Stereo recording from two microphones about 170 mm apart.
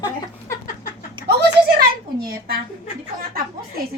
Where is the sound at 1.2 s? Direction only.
30° right (ahead or behind).